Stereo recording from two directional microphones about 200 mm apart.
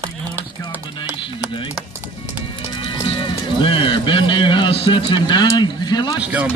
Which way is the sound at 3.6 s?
25° left (ahead or behind).